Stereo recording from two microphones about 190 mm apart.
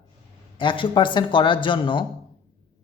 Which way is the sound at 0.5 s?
25° left (ahead or behind).